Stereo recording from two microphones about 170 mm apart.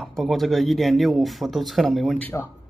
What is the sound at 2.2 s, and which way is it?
Speech, 15° left (ahead or behind).